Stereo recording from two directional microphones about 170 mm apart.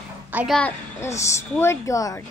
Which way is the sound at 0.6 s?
15° left (ahead or behind).